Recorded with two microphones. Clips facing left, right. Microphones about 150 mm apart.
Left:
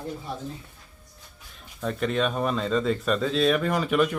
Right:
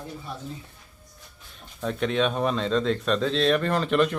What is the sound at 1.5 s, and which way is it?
Speech, centre (ahead or behind).